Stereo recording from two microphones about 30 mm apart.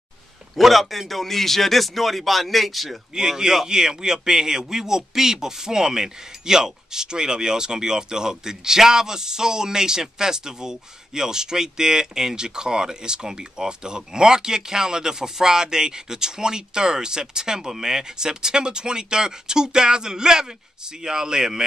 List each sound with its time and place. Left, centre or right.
0.6 s a man's voice: centre
3.2 s a man's voice: right